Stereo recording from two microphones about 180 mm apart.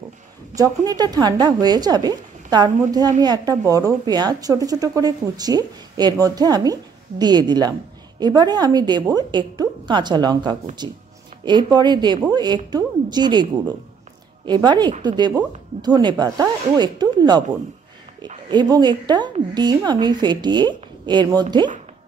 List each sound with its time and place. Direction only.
0.6 s a woman's voice: 20° right (ahead or behind)
18.5 s a woman's voice: 25° right (ahead or behind)